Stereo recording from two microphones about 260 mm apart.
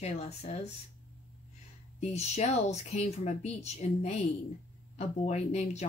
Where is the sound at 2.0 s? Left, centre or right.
Left.